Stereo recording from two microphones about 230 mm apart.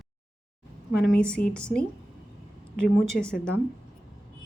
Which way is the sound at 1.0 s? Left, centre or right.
Centre.